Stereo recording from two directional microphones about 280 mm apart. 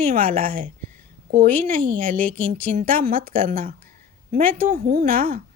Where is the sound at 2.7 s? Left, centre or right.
Right.